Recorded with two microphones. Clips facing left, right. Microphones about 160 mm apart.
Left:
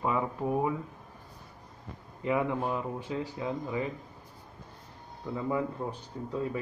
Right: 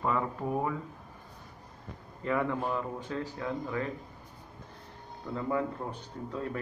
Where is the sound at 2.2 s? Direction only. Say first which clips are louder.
Left 1 dB; 15° left (ahead or behind).